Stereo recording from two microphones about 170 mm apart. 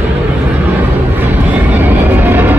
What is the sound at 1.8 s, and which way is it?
Vehicle, 10° right (ahead or behind).